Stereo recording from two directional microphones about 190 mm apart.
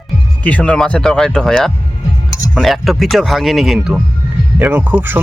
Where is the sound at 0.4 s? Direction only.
5° left (ahead or behind).